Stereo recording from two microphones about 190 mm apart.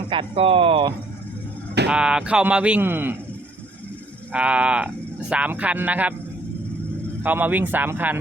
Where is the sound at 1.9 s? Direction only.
5° right (ahead or behind).